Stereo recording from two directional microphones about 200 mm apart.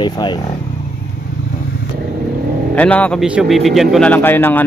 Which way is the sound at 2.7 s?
5° left (ahead or behind).